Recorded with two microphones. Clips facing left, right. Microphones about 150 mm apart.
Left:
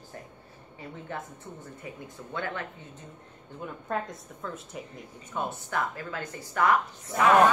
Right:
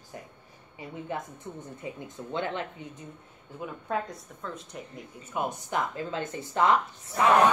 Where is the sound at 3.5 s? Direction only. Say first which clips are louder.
Right 1 dB; 5° right (ahead or behind).